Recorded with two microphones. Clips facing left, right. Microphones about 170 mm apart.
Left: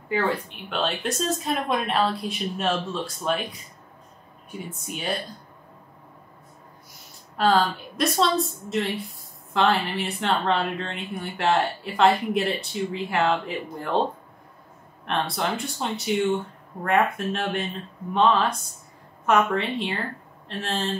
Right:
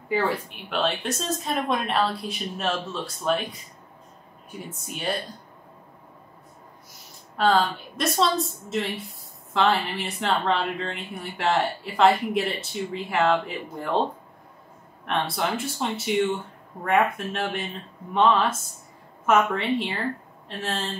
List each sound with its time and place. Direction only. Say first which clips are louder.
0.1 s speech: even; 5° right (ahead or behind)
4.8 s speech: right 1 dB; centre (ahead or behind)
7.3 s speech: even; centre (ahead or behind)
15.0 s speech: even; centre (ahead or behind)